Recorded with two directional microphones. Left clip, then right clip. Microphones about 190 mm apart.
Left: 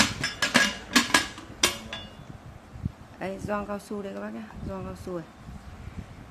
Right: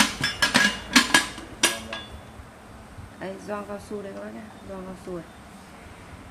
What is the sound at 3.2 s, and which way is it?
Speech, 50° left (ahead or behind).